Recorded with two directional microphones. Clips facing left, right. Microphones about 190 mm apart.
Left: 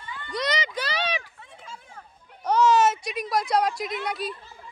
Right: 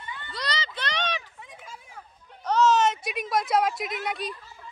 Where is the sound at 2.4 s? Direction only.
10° left (ahead or behind).